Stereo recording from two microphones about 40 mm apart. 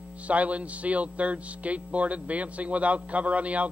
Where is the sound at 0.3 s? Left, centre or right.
Right.